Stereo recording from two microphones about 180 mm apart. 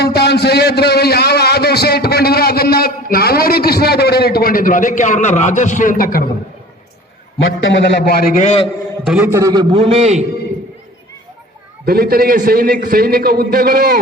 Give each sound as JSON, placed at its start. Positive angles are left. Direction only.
{"t": 0.0, "sound": "a man's voice", "side_deg": 65}
{"t": 7.6, "sound": "a man's voice", "side_deg": 80}
{"t": 8.4, "sound": "a man's voice", "side_deg": 35}
{"t": 9.0, "sound": "a man's voice", "side_deg": -10}
{"t": 11.9, "sound": "a man's voice", "side_deg": -55}